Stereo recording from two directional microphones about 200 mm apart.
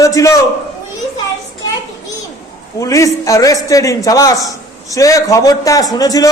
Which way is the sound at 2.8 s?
15° left (ahead or behind).